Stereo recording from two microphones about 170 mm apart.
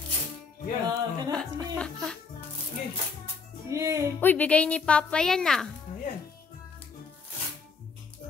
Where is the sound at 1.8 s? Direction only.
5° left (ahead or behind).